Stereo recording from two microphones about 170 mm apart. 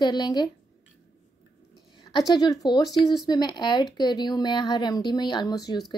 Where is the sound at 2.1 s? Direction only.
25° left (ahead or behind).